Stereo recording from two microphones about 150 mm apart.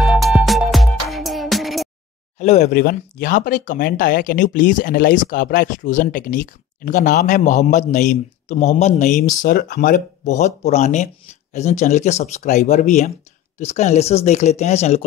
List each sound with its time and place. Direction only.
0.0 s music: centre (ahead or behind)
2.3 s speech: 45° left (ahead or behind)
2.7 s speech: 80° left; by 9.3 s 55° left (ahead or behind)
9.4 s speech: 75° left (ahead or behind); by 15.0 s 45° left (ahead or behind)